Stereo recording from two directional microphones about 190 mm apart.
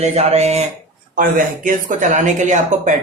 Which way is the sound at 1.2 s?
45° right (ahead or behind).